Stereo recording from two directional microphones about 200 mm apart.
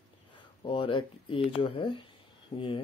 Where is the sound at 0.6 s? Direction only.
25° left (ahead or behind).